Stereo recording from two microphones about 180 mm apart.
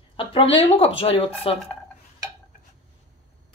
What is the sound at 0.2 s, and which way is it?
A woman's voice, 30° left (ahead or behind).